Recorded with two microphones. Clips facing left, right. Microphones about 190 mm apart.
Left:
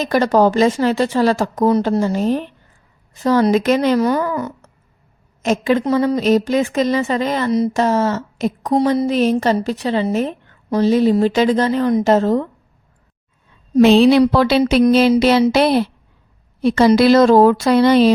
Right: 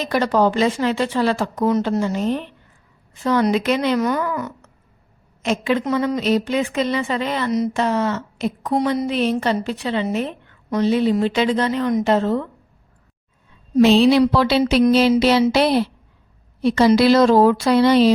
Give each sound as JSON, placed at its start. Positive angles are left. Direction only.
{"t": 0.0, "sound": "a woman's voice", "side_deg": 45}
{"t": 13.7, "sound": "a woman's voice", "side_deg": 55}